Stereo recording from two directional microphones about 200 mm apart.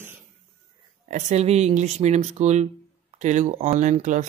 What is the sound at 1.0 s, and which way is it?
Speech, 35° right (ahead or behind).